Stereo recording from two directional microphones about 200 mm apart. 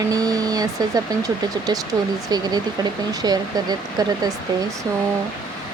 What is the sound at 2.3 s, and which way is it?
Speech, 20° right (ahead or behind).